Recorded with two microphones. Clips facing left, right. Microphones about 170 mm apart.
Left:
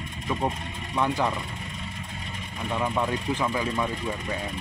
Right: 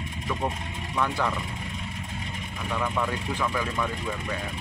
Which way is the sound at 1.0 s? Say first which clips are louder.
Left 2 dB; 20° left (ahead or behind).